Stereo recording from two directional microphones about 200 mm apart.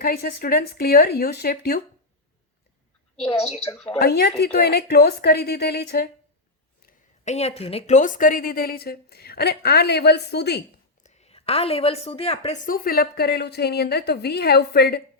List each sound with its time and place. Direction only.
0.0 s a woman's voice: 50° left (ahead or behind)
3.2 s a woman's voice: 30° left (ahead or behind)
4.0 s a woman's voice: 55° left (ahead or behind)
7.3 s a woman's voice: 30° left (ahead or behind); by 10.6 s 55° left (ahead or behind)
11.0 s a woman's voice: 35° left (ahead or behind)
12.6 s a woman's voice: 45° left (ahead or behind)